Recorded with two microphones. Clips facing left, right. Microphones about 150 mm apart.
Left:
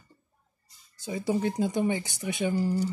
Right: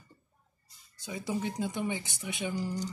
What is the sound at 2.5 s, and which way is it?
Speech, 45° left (ahead or behind).